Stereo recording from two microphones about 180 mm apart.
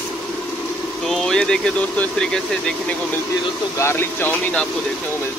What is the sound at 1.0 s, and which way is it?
Speech, centre (ahead or behind).